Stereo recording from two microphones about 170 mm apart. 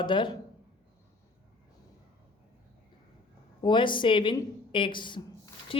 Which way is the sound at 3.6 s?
30° left (ahead or behind).